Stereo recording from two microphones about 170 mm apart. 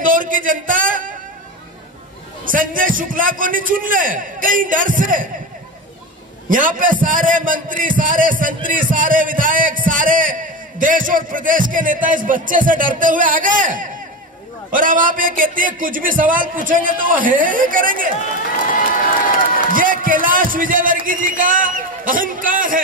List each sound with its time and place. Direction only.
0.0 s a sound: 55° right (ahead or behind)
2.4 s speech: 55° right (ahead or behind)
6.5 s speech: 50° right (ahead or behind)
19.7 s speech: 55° right (ahead or behind)